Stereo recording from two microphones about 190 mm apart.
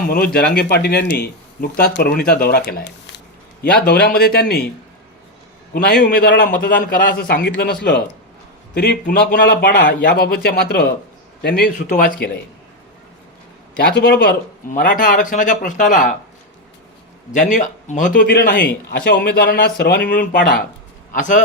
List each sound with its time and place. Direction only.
0.1 s speech: 55° left (ahead or behind)
5.7 s a man's voice: 55° left (ahead or behind)
13.8 s a man's voice: 55° left (ahead or behind)
17.3 s a man's voice: 40° left (ahead or behind)